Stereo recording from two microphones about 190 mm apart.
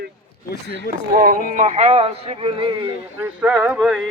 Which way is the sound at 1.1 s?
45° right (ahead or behind).